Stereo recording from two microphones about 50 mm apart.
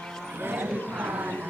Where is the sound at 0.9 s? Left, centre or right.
Right.